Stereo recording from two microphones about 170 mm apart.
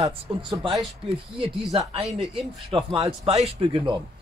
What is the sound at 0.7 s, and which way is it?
Speech, centre (ahead or behind).